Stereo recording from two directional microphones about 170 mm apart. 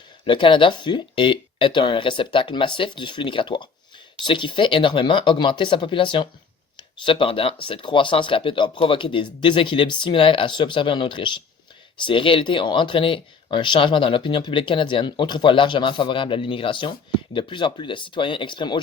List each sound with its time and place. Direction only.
0.3 s speech: 30° left (ahead or behind)